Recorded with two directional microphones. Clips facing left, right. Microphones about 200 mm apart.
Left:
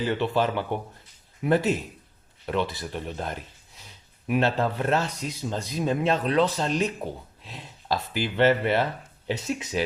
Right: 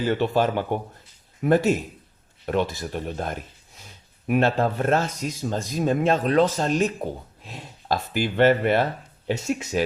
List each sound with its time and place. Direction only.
0.1 s speech: 45° right (ahead or behind)